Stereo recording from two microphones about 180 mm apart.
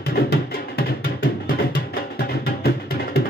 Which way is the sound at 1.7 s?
55° left (ahead or behind).